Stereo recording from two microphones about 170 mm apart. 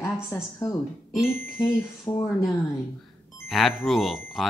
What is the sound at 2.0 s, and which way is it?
Speech, centre (ahead or behind).